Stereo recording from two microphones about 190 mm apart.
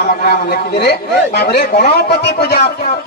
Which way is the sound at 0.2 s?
55° left (ahead or behind).